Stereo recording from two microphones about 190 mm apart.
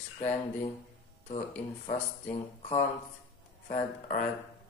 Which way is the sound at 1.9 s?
35° left (ahead or behind).